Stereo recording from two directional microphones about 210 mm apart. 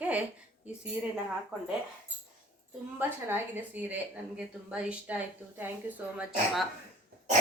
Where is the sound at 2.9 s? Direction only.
10° right (ahead or behind).